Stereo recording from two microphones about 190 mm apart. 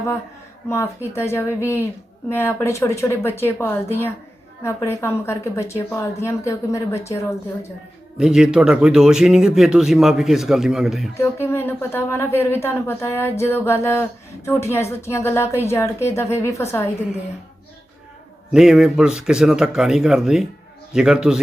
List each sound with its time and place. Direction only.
0.7 s speech: 15° left (ahead or behind)
8.2 s speech: 5° right (ahead or behind)
11.2 s speech: 15° left (ahead or behind)
18.5 s speech: 5° right (ahead or behind)